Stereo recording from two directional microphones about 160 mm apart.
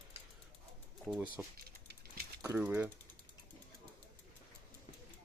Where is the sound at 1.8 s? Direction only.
70° right (ahead or behind).